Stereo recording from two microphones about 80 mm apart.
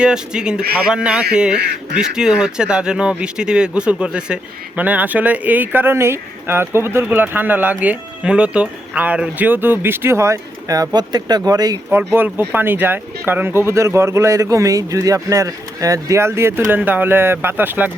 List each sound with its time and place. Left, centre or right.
0.0 s speech: centre
9.5 s speech: right
11.9 s speech: right